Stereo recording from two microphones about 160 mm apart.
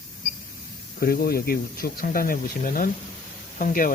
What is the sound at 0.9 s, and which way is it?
Speech, 70° left (ahead or behind).